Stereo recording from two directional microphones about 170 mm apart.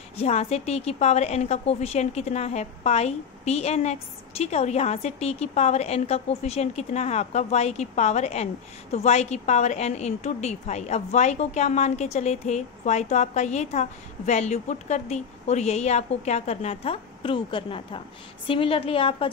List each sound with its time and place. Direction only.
0.2 s a woman's voice: 40° left (ahead or behind)